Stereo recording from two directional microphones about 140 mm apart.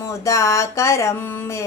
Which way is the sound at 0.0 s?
20° left (ahead or behind).